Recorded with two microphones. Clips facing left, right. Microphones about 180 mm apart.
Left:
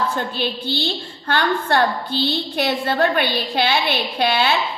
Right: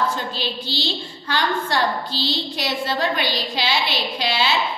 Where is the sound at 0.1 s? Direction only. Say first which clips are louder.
Left 3 dB; 55° left (ahead or behind).